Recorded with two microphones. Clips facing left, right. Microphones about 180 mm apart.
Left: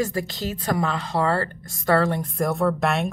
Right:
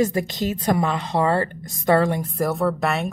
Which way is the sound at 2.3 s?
Centre (ahead or behind).